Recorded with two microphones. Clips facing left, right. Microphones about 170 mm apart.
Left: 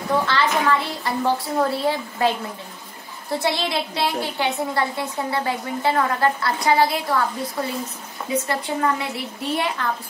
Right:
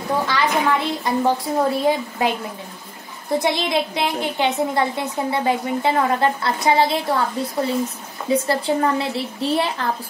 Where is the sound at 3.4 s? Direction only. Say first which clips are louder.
Right 2 dB; 20° right (ahead or behind).